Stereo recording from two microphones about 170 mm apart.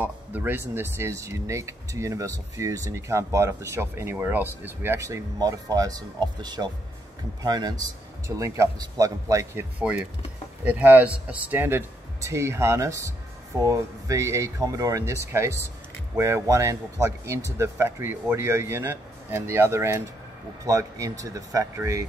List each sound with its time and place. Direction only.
0.0 s speech: 10° right (ahead or behind)